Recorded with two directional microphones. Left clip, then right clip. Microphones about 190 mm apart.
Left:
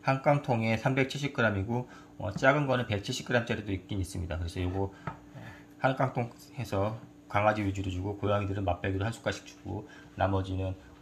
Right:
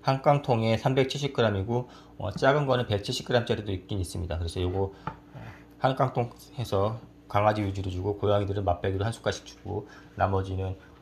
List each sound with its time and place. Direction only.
0.0 s speech: 20° right (ahead or behind)